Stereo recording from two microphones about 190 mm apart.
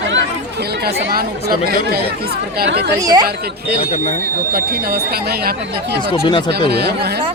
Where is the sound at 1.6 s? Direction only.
55° right (ahead or behind).